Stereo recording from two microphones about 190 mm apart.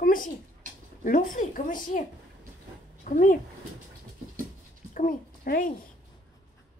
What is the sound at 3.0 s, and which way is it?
Speech, 45° left (ahead or behind).